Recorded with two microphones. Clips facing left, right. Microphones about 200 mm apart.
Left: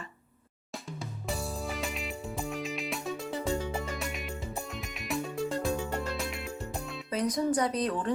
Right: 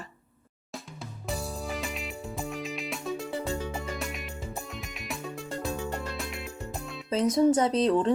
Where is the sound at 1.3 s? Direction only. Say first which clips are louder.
Right 1 dB; centre (ahead or behind).